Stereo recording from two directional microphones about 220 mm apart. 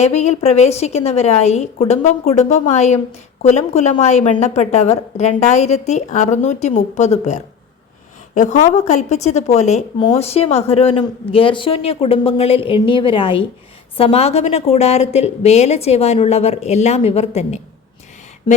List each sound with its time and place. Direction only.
0.0 s a woman's voice: 30° left (ahead or behind)